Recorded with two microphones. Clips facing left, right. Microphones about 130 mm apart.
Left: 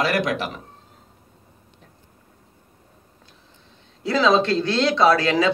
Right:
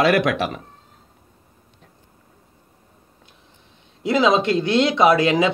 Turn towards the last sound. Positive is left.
turn(degrees=-20)  # may be behind; listen again after turning